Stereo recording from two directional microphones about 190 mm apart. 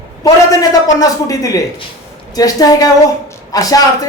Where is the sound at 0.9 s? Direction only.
20° left (ahead or behind).